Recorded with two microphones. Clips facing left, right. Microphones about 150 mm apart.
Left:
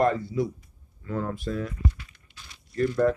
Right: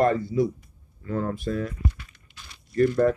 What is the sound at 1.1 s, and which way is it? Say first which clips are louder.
Speech: right 3 dB; 45° right (ahead or behind).